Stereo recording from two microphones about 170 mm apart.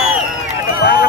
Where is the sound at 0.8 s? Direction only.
65° left (ahead or behind).